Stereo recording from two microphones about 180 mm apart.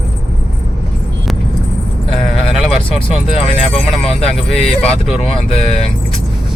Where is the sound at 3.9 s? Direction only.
35° left (ahead or behind).